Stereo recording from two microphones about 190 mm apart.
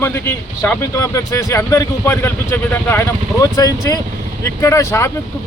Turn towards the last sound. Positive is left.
turn(degrees=15)  # may be behind; listen again after turning